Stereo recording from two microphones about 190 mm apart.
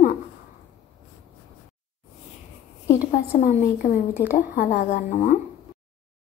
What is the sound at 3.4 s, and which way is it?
A woman's voice, 45° left (ahead or behind).